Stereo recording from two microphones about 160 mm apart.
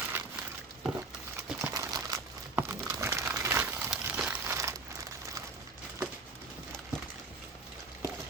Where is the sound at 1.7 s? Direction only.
25° right (ahead or behind).